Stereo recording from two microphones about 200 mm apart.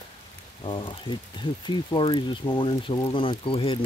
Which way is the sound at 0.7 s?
25° left (ahead or behind).